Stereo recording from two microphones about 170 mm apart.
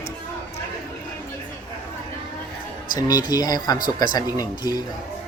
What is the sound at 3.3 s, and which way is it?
Speech, 25° left (ahead or behind).